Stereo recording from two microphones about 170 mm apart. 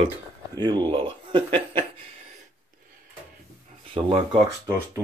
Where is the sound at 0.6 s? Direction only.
25° right (ahead or behind).